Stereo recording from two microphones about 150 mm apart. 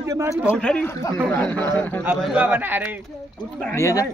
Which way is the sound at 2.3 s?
10° right (ahead or behind).